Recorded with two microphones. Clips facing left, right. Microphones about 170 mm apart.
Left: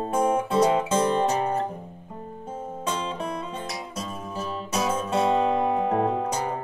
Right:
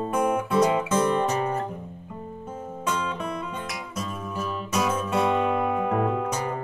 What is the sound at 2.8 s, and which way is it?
Music, 30° left (ahead or behind).